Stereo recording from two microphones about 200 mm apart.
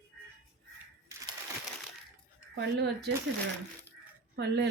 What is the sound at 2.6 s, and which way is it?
Speech, 60° right (ahead or behind).